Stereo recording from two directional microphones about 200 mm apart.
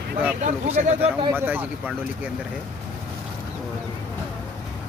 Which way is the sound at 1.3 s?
10° right (ahead or behind).